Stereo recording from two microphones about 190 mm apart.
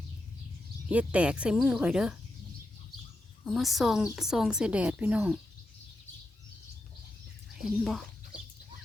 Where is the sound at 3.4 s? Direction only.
Centre (ahead or behind).